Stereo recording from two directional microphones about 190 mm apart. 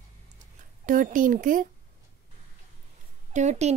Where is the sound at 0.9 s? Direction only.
45° right (ahead or behind).